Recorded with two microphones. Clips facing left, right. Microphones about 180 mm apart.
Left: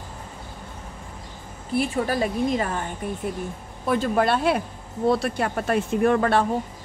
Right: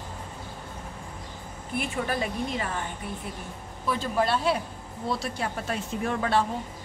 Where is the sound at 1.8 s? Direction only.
35° left (ahead or behind).